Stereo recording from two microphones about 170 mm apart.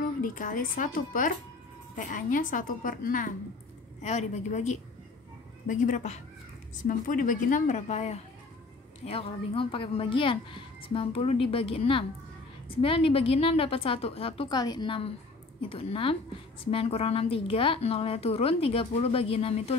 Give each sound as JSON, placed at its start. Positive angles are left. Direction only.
{"t": 0.2, "sound": "a woman's voice", "side_deg": 50}